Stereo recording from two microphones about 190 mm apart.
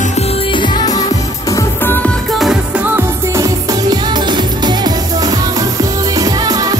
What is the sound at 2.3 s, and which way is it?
Music, centre (ahead or behind).